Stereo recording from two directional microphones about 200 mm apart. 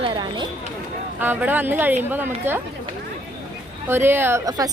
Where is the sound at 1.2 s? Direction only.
10° right (ahead or behind).